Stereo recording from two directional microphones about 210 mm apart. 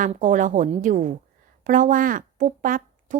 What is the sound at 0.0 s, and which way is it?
Speech, 35° right (ahead or behind).